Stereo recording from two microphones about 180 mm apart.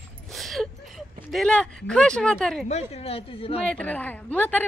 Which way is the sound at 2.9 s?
35° left (ahead or behind).